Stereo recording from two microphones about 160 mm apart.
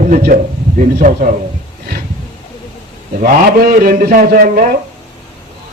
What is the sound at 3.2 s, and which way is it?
A man's voice, 65° right (ahead or behind).